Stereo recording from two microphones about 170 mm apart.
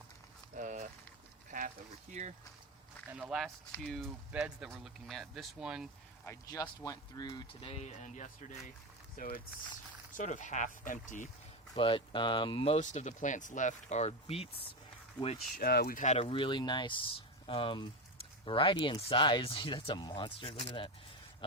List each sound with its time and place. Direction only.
0.5 s a sound: 50° right (ahead or behind)
1.5 s pour: 50° right (ahead or behind)
2.2 s speech: 40° right (ahead or behind)
3.1 s speech: 5° right (ahead or behind)
6.2 s speech: 20° left (ahead or behind); by 8.5 s 45° left (ahead or behind)
9.1 s speech: 55° left (ahead or behind)
11.8 s speech: 30° left (ahead or behind)
15.5 s speech: 65° left (ahead or behind)
16.0 s speech: 45° left (ahead or behind)
16.3 s speech: 30° left (ahead or behind)